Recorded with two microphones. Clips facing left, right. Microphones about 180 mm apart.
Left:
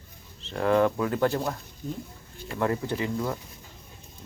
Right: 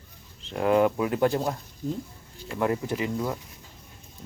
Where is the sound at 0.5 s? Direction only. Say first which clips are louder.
Right 1 dB; 15° right (ahead or behind).